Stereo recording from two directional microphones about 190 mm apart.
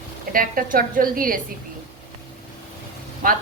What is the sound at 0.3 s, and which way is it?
A woman's voice, 45° right (ahead or behind).